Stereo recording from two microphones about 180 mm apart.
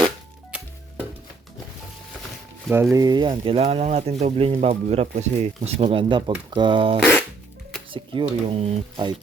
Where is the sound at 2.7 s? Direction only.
15° right (ahead or behind).